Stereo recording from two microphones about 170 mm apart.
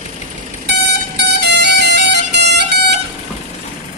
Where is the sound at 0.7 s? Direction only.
90° right.